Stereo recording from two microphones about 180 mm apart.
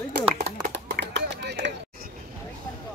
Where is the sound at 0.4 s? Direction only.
70° right (ahead or behind).